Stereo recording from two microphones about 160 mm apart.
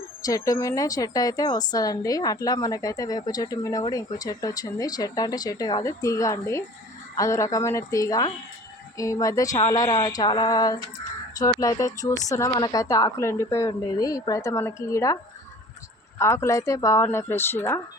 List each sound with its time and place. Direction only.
0.3 s a woman's voice: 20° left (ahead or behind)